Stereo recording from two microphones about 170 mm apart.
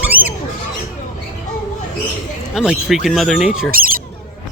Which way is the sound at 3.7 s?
60° right (ahead or behind).